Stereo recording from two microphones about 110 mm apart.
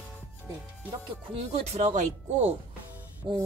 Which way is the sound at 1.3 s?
75° right (ahead or behind).